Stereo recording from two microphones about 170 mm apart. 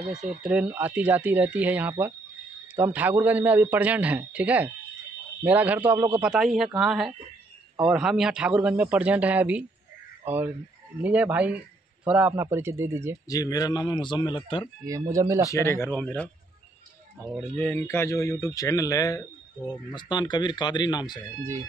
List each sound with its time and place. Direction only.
0.1 s a man's voice: 5° right (ahead or behind)
13.3 s speech: 20° left (ahead or behind)
14.9 s speech: 20° right (ahead or behind)
15.5 s speech: 15° left (ahead or behind)
17.4 s speech: 10° left (ahead or behind)
21.4 s a man's voice: 15° right (ahead or behind)